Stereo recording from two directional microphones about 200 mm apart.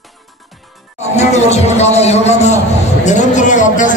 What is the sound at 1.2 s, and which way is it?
A man's voice, 35° left (ahead or behind).